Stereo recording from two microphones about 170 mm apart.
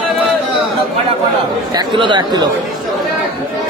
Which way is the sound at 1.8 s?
25° right (ahead or behind).